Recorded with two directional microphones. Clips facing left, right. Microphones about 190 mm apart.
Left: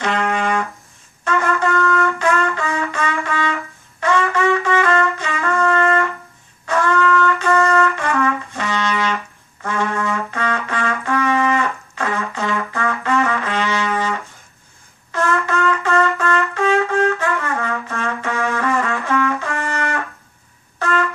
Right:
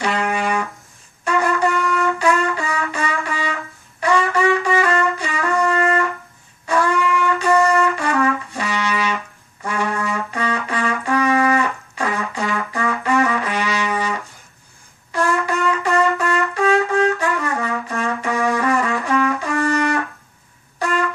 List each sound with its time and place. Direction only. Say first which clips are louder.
0.2 s brass instrument: left 1 dB; 15° right (ahead or behind)
1.2 s trumpet: right 1 dB; 15° right (ahead or behind)
5.4 s music: left 1 dB; 15° right (ahead or behind)
6.7 s wind instrument: left 1 dB; 15° right (ahead or behind)
7.4 s music: right 3 dB; 15° right (ahead or behind)
9.9 s trumpet: left 1 dB; 15° right (ahead or behind)
15.1 s trumpet: even; 15° right (ahead or behind)